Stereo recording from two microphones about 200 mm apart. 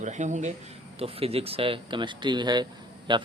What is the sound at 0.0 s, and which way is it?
Speech, 35° right (ahead or behind).